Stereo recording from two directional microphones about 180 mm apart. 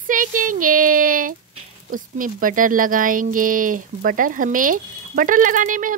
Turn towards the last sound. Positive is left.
turn(degrees=-50)  # may be behind; listen again after turning